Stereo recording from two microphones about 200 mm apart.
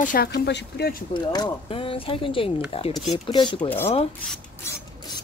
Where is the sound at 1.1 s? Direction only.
20° left (ahead or behind).